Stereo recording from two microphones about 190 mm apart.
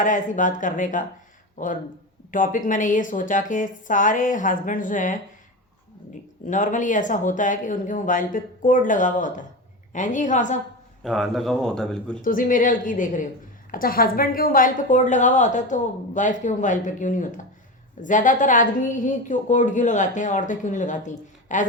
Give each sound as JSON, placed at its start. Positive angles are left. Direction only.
{"t": 0.0, "sound": "speech", "side_deg": 45}
{"t": 6.5, "sound": "a woman's voice", "side_deg": 40}
{"t": 11.0, "sound": "speech", "side_deg": 0}
{"t": 12.2, "sound": "a woman's voice", "side_deg": 45}